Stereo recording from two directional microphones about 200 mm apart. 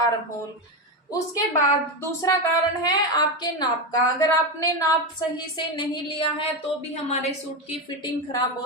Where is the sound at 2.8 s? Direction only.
20° left (ahead or behind).